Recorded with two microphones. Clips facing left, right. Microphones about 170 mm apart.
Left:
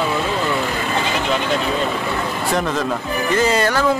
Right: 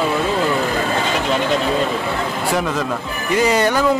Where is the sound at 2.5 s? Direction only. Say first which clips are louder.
Left 1 dB; 5° right (ahead or behind).